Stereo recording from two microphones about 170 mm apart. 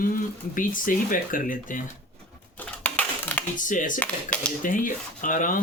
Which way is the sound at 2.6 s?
10° left (ahead or behind).